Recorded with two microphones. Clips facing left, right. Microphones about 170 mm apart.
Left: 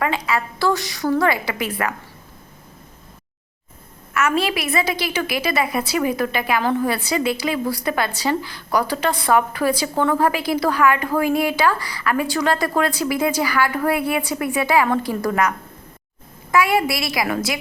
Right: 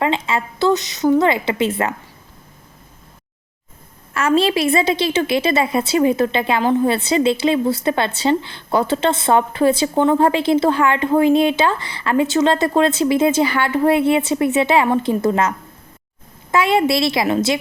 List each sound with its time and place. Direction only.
0.0 s a woman's voice: 25° right (ahead or behind)
4.1 s a woman's voice: 30° right (ahead or behind)